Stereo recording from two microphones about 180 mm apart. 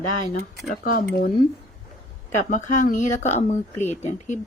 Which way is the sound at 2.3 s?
40° left (ahead or behind).